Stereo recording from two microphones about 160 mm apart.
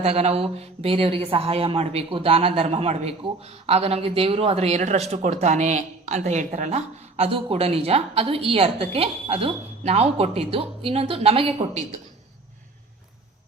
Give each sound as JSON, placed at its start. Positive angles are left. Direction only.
{"t": 0.0, "sound": "a woman's voice", "side_deg": -40}